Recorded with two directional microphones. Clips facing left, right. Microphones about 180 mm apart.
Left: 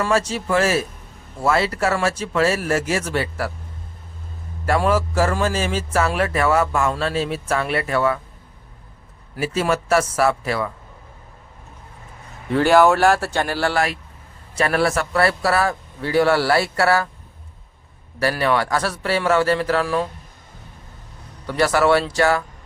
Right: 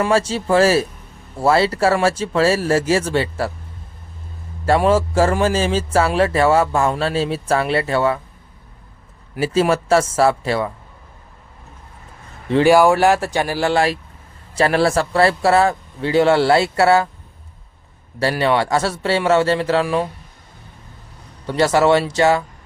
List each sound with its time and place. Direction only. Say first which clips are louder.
0.1 s speech: right 3 dB; 30° right (ahead or behind)
4.9 s speech: right 3 dB; 25° right (ahead or behind)
9.4 s speech: right 4 dB; 30° right (ahead or behind)
12.6 s speech: right 2 dB; 10° right (ahead or behind)
14.5 s speech: right 3 dB; 30° right (ahead or behind)
18.2 s speech: right 2 dB; 25° right (ahead or behind)
21.4 s speech: right 2 dB; 25° right (ahead or behind)